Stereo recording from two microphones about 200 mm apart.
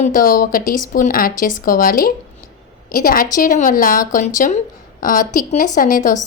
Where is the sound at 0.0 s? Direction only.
45° left (ahead or behind).